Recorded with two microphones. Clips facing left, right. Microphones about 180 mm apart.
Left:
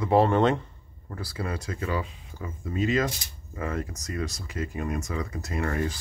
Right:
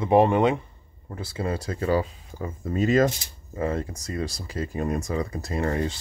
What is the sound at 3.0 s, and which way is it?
Speech, 25° right (ahead or behind).